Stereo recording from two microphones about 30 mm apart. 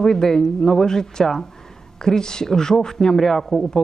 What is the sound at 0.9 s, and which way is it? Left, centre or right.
Speech, left.